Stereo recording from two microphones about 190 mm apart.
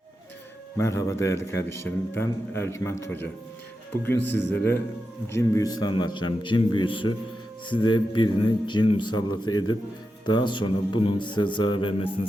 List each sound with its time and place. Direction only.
0.8 s a man's voice: 15° left (ahead or behind)